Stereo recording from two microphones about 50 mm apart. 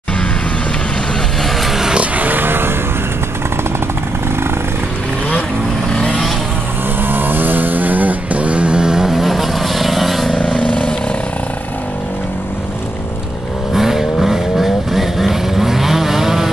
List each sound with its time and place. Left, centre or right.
1.4 s vehicle: centre
2.0 s vehicle: right
5.9 s vehicle: centre
7.0 s vehicle: right; by 10.4 s centre
10.6 s vehicle: left
13.7 s vehicle: centre